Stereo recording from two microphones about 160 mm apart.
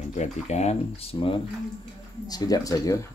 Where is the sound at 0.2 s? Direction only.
45° left (ahead or behind).